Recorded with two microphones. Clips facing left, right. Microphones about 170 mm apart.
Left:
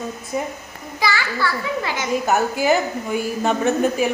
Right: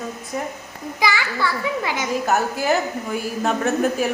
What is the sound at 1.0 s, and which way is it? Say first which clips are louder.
Speech: even; 15° right (ahead or behind).